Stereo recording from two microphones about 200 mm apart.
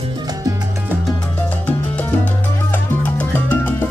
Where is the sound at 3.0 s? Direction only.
10° left (ahead or behind).